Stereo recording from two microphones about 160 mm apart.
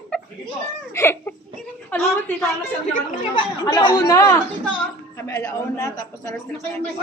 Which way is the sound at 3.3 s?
30° left (ahead or behind).